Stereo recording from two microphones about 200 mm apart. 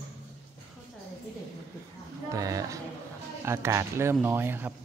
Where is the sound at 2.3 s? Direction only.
15° right (ahead or behind).